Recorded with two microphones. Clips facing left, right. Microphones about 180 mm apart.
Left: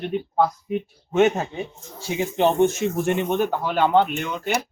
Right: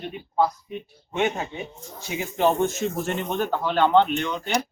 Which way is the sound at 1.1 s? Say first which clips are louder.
Left 7 dB; 40° left (ahead or behind).